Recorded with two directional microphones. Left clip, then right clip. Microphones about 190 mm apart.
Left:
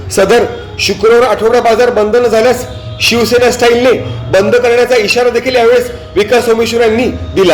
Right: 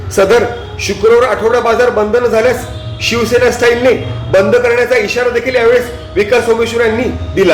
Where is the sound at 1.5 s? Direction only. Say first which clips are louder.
Left 2 dB; 30° left (ahead or behind).